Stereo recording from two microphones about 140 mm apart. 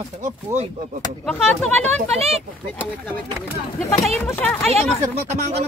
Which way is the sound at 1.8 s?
45° right (ahead or behind).